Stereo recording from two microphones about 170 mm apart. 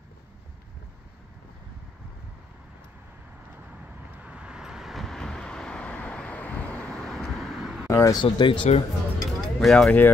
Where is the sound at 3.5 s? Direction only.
10° right (ahead or behind).